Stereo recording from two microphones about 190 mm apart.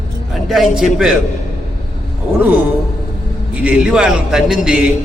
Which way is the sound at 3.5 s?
5° right (ahead or behind).